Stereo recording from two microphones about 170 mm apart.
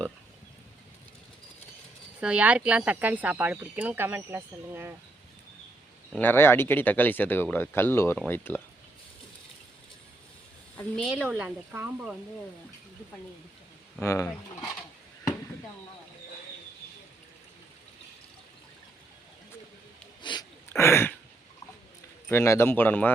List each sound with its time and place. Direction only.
2.2 s speech: 10° right (ahead or behind)
6.1 s speech: 10° left (ahead or behind)
10.8 s speech: centre (ahead or behind)
14.0 s speech: 20° left (ahead or behind)
20.3 s a sound: 25° left (ahead or behind)
20.7 s a sound: 15° left (ahead or behind)
22.3 s speech: 15° left (ahead or behind)